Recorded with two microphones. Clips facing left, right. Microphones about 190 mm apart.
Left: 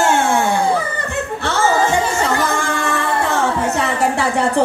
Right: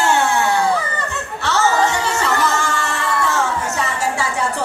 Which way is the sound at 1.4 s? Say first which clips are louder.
Even; 55° left (ahead or behind).